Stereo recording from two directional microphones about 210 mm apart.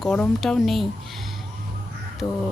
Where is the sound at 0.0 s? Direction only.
5° left (ahead or behind).